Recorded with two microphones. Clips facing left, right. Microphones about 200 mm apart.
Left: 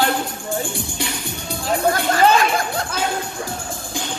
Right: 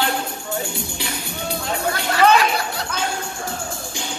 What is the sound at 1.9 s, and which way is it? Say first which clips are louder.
Chatter: even; 45° left (ahead or behind).